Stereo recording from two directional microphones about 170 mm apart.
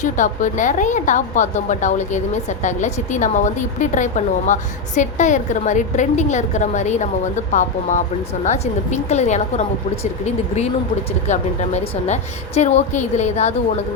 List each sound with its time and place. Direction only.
0.0 s a woman's voice: 45° left (ahead or behind)